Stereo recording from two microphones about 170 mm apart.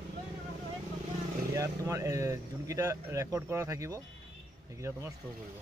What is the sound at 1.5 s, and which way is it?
Speech, 15° right (ahead or behind).